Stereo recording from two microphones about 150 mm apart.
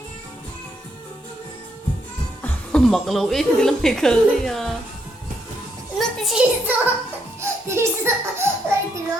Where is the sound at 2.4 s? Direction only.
10° left (ahead or behind).